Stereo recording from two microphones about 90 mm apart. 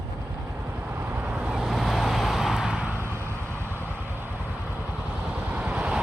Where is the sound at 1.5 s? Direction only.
5° right (ahead or behind).